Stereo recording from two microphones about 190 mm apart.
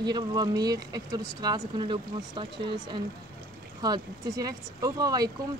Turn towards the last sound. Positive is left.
turn(degrees=-20)  # may be behind; listen again after turning